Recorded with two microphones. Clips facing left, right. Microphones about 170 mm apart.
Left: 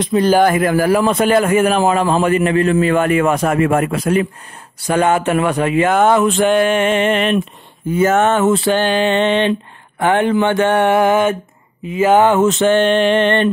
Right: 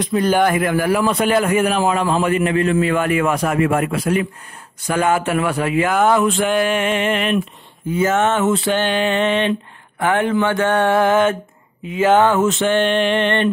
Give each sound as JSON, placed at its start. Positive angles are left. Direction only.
{"t": 0.0, "sound": "a man's voice", "side_deg": 30}
{"t": 4.8, "sound": "a man's voice", "side_deg": 30}
{"t": 8.0, "sound": "speech", "side_deg": 50}
{"t": 8.5, "sound": "a man's voice", "side_deg": 35}
{"t": 9.9, "sound": "mantra", "side_deg": 25}
{"t": 12.0, "sound": "speech", "side_deg": 10}
{"t": 12.4, "sound": "a man's voice", "side_deg": 40}